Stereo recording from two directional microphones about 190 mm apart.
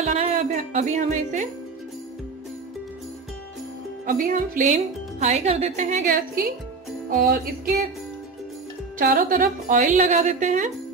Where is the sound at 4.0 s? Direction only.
40° right (ahead or behind).